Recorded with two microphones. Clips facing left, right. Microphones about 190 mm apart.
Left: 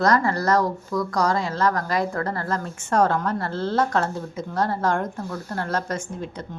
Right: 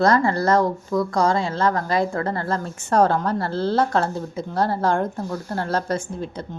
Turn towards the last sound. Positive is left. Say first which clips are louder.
# right 3 dB
turn(degrees=-35)  # may be behind; listen again after turning